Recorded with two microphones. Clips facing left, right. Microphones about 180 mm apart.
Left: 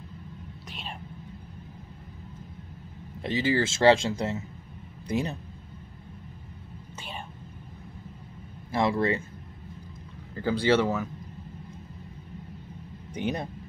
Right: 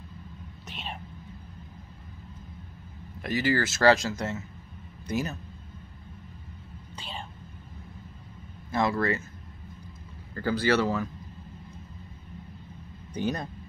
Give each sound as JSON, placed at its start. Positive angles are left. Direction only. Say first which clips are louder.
{"t": 3.2, "sound": "a man's voice", "louder": "left 1 dB", "side_deg": 25}
{"t": 8.7, "sound": "speech", "louder": "left 1 dB", "side_deg": 25}
{"t": 10.3, "sound": "speech", "louder": "left 2 dB", "side_deg": 20}
{"t": 13.1, "sound": "speech", "louder": "even", "side_deg": 25}